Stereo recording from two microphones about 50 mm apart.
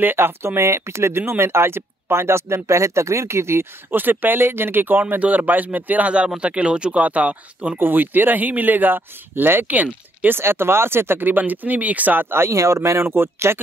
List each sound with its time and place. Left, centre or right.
0.0 s speech: right
3.9 s speech: right
7.8 s speech: right
10.3 s speech: right
13.0 s speech: right